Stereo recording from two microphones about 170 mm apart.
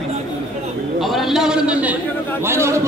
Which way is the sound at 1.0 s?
Centre (ahead or behind).